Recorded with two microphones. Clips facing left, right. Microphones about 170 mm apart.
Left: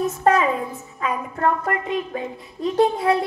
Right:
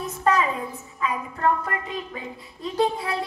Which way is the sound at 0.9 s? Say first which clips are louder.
Left 3 dB; 50° left (ahead or behind).